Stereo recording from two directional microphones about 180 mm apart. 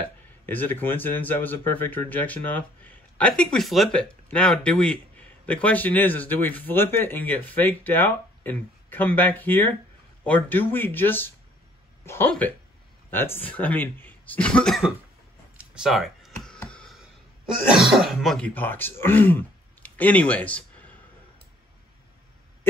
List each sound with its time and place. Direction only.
0.0 s speech: 10° left (ahead or behind)
15.5 s a sound: 5° right (ahead or behind)
17.6 s speech: centre (ahead or behind)